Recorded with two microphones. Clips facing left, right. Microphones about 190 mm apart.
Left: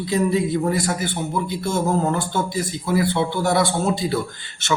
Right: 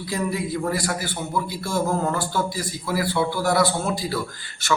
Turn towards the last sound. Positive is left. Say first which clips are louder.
# left 1 dB
turn(degrees=25)  # may be behind; listen again after turning